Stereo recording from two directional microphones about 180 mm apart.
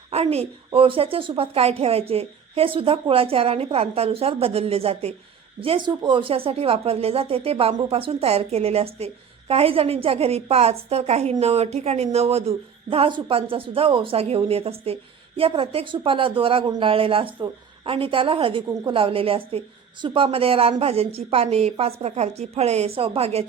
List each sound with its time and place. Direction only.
0.1 s speech: 35° right (ahead or behind)